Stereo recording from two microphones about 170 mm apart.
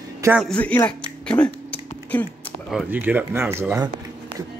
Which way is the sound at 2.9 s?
10° right (ahead or behind).